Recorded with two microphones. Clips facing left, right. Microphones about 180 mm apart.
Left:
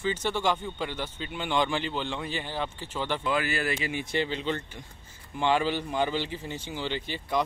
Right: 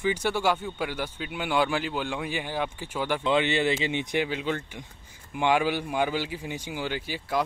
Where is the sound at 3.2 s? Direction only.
25° right (ahead or behind).